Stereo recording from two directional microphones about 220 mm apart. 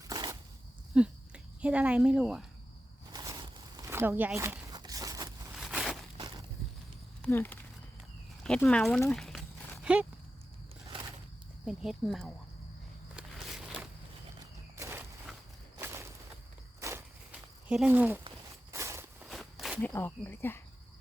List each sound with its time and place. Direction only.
0.0 s dog: 15° right (ahead or behind)
0.9 s speech: 5° right (ahead or behind)
3.1 s a sound: 15° right (ahead or behind)
5.5 s a sound: centre (ahead or behind)
7.2 s a sound: 10° left (ahead or behind)
8.4 s speech: 5° left (ahead or behind)
11.6 s speech: centre (ahead or behind)
14.8 s walk: 10° right (ahead or behind)
17.7 s speech: 5° right (ahead or behind)
18.7 s a sound: 15° right (ahead or behind)
19.3 s walk: centre (ahead or behind)
19.9 s speech: 10° left (ahead or behind)